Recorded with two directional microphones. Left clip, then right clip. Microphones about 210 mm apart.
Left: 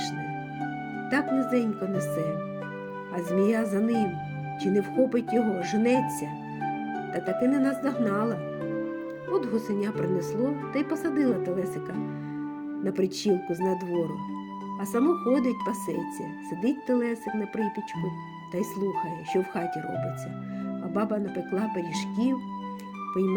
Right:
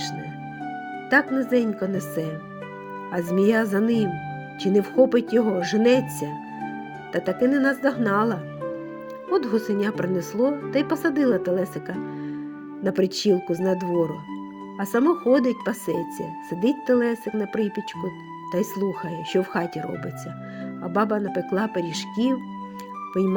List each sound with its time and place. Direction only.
1.1 s speech: 25° right (ahead or behind)
7.1 s speech: 30° right (ahead or behind)
12.8 s speech: 30° right (ahead or behind)
20.9 s speech: 30° right (ahead or behind)